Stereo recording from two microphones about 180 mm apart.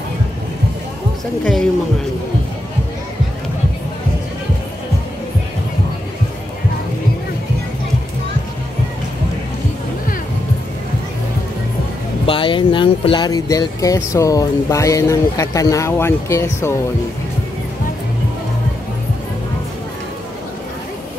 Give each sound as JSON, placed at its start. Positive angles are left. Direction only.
{"t": 1.4, "sound": "speech", "side_deg": 5}
{"t": 12.3, "sound": "speech", "side_deg": 30}